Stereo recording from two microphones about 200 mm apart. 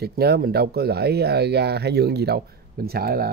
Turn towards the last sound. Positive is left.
turn(degrees=-50)  # may be behind; listen again after turning